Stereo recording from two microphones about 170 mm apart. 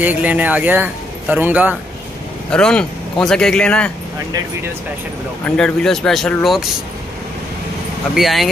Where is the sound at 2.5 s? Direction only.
5° left (ahead or behind).